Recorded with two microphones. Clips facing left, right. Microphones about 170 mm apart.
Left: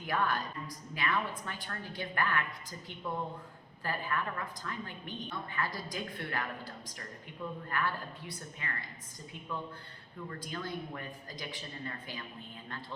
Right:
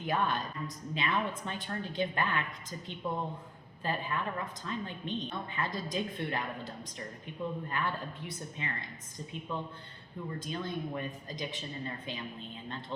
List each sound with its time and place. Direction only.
0.0 s a woman's voice: 20° right (ahead or behind)